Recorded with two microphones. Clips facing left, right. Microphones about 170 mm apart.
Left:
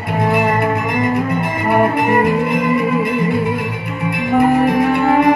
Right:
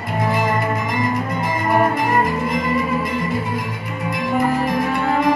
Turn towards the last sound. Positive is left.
turn(degrees=60)  # may be behind; listen again after turning